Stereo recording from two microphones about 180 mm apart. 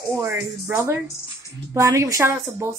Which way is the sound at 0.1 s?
15° right (ahead or behind).